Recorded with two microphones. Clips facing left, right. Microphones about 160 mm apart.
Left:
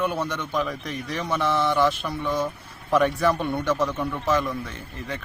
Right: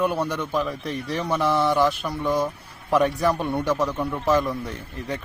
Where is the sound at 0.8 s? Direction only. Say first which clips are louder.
Right 3 dB; 35° right (ahead or behind).